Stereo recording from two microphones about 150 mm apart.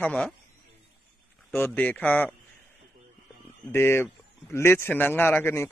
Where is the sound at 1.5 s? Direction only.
10° left (ahead or behind).